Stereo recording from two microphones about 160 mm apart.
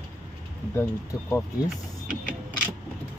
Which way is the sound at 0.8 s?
15° left (ahead or behind).